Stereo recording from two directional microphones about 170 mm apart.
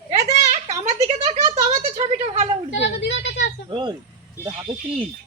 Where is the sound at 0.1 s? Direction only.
40° right (ahead or behind).